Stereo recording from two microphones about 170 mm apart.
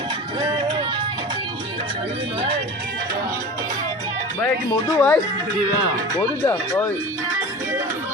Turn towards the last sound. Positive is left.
turn(degrees=10)  # may be behind; listen again after turning